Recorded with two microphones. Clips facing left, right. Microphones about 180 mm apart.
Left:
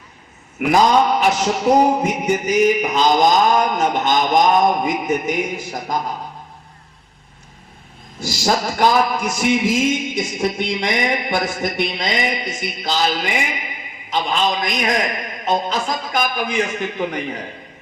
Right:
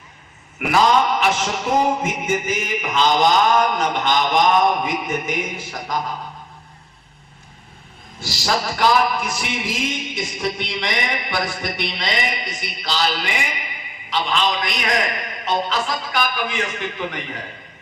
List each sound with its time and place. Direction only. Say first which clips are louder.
1.2 s a man's voice: left 4 dB; 40° left (ahead or behind)
8.2 s a man's voice: left 3 dB; 45° left (ahead or behind)